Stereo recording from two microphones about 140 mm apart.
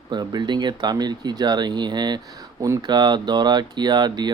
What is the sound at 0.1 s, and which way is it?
Speech, 30° right (ahead or behind).